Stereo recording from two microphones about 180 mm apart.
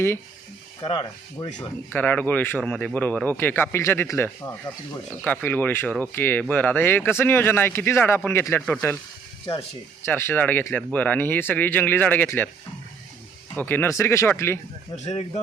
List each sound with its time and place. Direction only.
0.9 s speech: 25° left (ahead or behind)
1.5 s speech: 10° left (ahead or behind)
10.1 s speech: 10° left (ahead or behind)
13.6 s speech: 10° left (ahead or behind)
14.9 s speech: 40° left (ahead or behind)